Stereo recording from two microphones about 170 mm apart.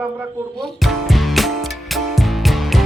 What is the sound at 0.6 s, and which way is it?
Music, centre (ahead or behind).